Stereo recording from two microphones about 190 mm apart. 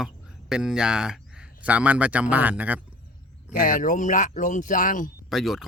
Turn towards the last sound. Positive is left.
turn(degrees=0)  # may be behind; listen again after turning